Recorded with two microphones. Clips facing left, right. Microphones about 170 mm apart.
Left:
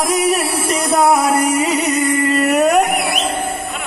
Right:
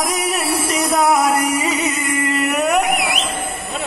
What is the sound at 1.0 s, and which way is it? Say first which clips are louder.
Music: left 2 dB; 30° left (ahead or behind).